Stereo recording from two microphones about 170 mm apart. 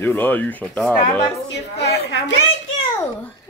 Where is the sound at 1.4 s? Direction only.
80° left.